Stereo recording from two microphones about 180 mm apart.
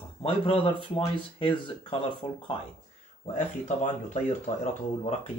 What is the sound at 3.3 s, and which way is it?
Speech, 40° left (ahead or behind).